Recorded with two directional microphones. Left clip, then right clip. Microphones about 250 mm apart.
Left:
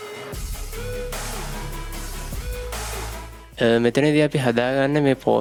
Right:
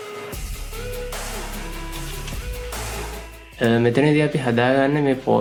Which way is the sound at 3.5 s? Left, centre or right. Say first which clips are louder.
Even; left.